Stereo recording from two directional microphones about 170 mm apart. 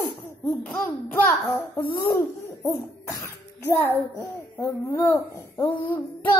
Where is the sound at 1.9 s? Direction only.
15° left (ahead or behind).